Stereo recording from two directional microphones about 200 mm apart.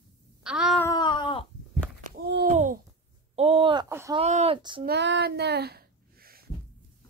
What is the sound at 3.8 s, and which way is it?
Wail, 15° right (ahead or behind).